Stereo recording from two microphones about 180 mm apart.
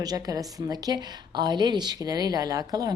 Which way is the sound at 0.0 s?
20° right (ahead or behind).